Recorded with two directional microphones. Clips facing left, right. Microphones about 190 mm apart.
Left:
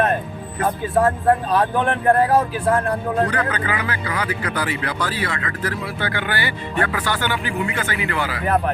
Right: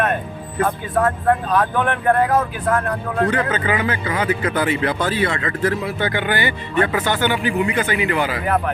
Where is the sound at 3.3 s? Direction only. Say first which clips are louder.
Right 3 dB; 25° right (ahead or behind).